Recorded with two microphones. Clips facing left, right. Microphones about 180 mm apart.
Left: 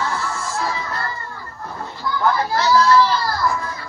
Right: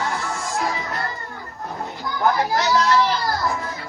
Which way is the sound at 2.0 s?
20° right (ahead or behind).